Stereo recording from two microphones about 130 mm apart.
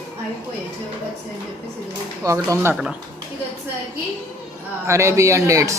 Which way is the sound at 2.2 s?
25° right (ahead or behind).